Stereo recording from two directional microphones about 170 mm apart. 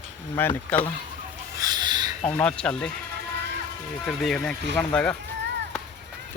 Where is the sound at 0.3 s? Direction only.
10° left (ahead or behind).